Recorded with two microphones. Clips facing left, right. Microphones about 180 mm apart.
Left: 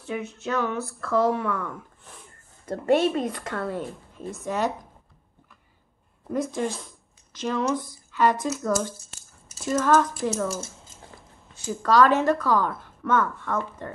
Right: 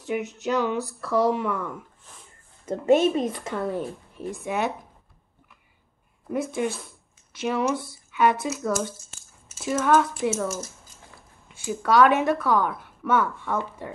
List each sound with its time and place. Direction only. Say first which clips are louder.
0.0 s speech: right 3 dB; 20° right (ahead or behind)
2.9 s speech: right 2 dB; 10° right (ahead or behind)
6.3 s speech: even; 5° right (ahead or behind)
10.5 s a sound: even; 25° left (ahead or behind)
11.6 s speech: right 1 dB; 5° right (ahead or behind)